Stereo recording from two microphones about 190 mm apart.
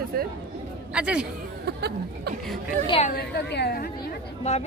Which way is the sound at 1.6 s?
60° right (ahead or behind).